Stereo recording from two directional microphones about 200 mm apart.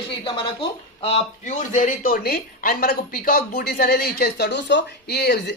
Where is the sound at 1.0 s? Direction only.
30° left (ahead or behind).